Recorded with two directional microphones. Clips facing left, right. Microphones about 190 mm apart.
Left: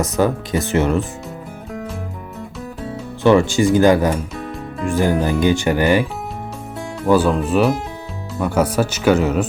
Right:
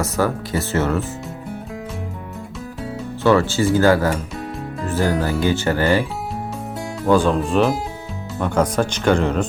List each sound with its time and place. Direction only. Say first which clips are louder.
0.0 s speech: left 3 dB; 20° left (ahead or behind)
3.2 s speech: left 3 dB; 15° left (ahead or behind)
7.0 s speech: left 1 dB; 5° left (ahead or behind)